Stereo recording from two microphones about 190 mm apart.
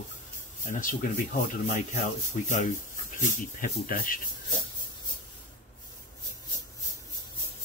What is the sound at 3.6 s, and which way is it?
Speech, 50° left (ahead or behind).